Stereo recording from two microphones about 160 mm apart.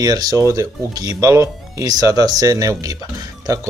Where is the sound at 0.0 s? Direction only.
25° right (ahead or behind).